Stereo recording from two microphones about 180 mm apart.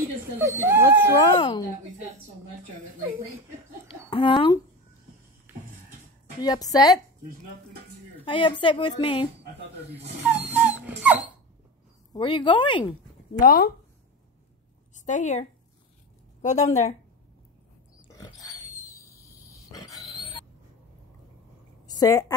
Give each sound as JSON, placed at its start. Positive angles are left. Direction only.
{"t": 0.4, "sound": "speech", "side_deg": -15}
{"t": 1.4, "sound": "a woman's voice", "side_deg": 25}
{"t": 3.8, "sound": "a sound", "side_deg": 30}
{"t": 5.5, "sound": "a sound", "side_deg": -10}
{"t": 6.4, "sound": "a woman's voice", "side_deg": 20}
{"t": 8.3, "sound": "a woman's voice", "side_deg": 30}
{"t": 10.2, "sound": "dog", "side_deg": -10}
{"t": 12.1, "sound": "a woman's voice", "side_deg": 25}
{"t": 13.4, "sound": "speech", "side_deg": 55}
{"t": 15.0, "sound": "a woman's voice", "side_deg": 45}
{"t": 16.4, "sound": "a woman's voice", "side_deg": 40}
{"t": 18.1, "sound": "pig", "side_deg": 20}
{"t": 21.8, "sound": "a sound", "side_deg": 20}